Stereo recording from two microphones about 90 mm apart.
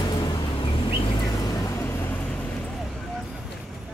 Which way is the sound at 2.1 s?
15° left (ahead or behind).